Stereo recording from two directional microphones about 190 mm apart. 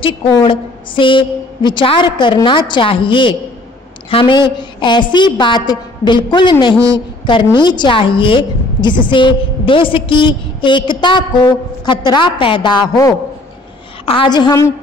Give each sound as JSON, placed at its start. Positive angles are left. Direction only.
{"t": 0.0, "sound": "a woman's voice", "side_deg": 25}